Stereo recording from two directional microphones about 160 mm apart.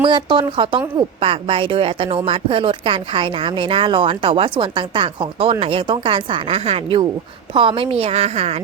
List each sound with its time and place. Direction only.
0.0 s speech: 30° right (ahead or behind)